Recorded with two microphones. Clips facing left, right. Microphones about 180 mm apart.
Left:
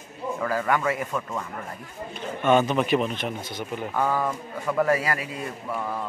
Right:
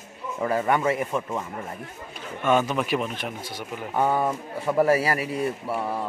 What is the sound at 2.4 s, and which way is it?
Speech, 5° right (ahead or behind).